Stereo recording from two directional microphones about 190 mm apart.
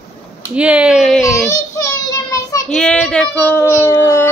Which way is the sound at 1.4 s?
15° left (ahead or behind).